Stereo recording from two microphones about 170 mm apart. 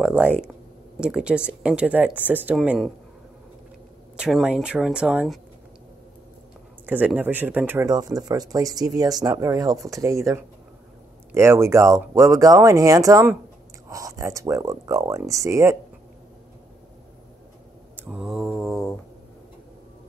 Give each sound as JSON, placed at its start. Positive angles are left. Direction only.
{"t": 0.0, "sound": "speech", "side_deg": -5}
{"t": 4.2, "sound": "speech", "side_deg": -5}
{"t": 6.9, "sound": "speech", "side_deg": -10}
{"t": 17.9, "sound": "mantra", "side_deg": -10}